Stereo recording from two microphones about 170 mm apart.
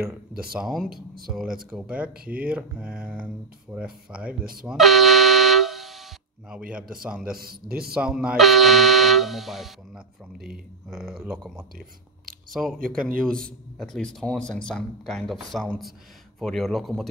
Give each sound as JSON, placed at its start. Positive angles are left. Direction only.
{"t": 0.4, "sound": "speech", "side_deg": -5}
{"t": 4.6, "sound": "vehicle horn", "side_deg": 0}
{"t": 6.7, "sound": "speech", "side_deg": -5}
{"t": 7.3, "sound": "a man's voice", "side_deg": -60}
{"t": 7.9, "sound": "speech", "side_deg": -5}
{"t": 12.7, "sound": "a man's voice", "side_deg": -55}
{"t": 13.2, "sound": "speech", "side_deg": 5}